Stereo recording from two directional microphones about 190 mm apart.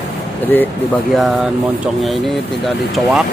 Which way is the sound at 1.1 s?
Centre (ahead or behind).